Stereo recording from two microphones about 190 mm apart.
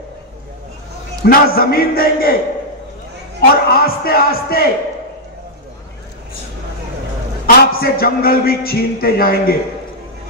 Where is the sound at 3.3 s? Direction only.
55° left (ahead or behind).